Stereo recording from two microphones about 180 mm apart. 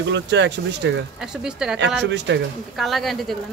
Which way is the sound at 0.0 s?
75° right (ahead or behind).